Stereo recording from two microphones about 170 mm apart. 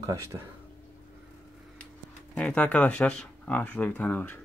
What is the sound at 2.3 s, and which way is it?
Speech, 5° left (ahead or behind).